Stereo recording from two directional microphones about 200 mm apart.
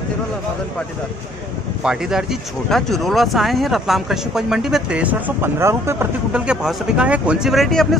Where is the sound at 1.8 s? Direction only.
5° right (ahead or behind).